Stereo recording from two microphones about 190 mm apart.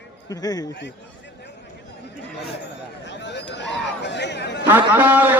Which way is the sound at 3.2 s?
65° left (ahead or behind).